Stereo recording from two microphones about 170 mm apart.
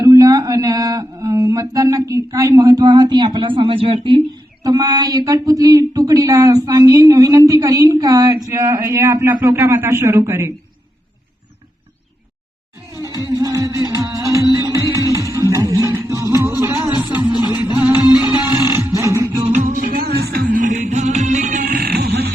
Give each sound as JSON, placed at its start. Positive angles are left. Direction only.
{"t": 0.0, "sound": "a sound", "side_deg": -20}
{"t": 12.9, "sound": "music", "side_deg": -15}
{"t": 18.9, "sound": "beatboxing", "side_deg": -15}
{"t": 19.4, "sound": "music", "side_deg": -40}